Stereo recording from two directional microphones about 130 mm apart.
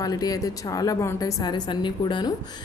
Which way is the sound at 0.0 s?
30° left (ahead or behind).